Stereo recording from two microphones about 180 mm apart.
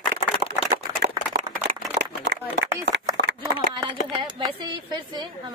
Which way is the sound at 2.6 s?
85° right.